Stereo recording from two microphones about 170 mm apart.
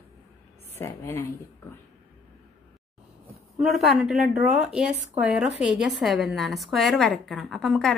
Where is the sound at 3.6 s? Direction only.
Centre (ahead or behind).